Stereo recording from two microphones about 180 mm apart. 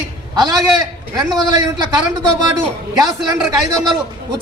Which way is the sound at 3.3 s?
20° right (ahead or behind).